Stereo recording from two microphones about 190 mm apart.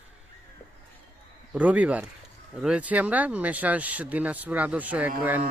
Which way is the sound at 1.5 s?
10° right (ahead or behind).